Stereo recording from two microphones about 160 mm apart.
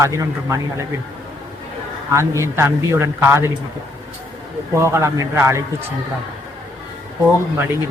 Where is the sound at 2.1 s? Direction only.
15° right (ahead or behind).